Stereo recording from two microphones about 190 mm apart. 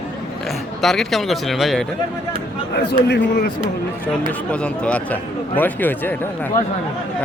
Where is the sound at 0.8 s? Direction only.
Centre (ahead or behind).